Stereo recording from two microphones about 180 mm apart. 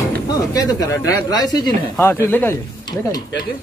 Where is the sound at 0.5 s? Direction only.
20° left (ahead or behind).